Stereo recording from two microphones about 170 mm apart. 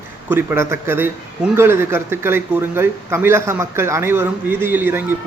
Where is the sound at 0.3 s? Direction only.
15° right (ahead or behind).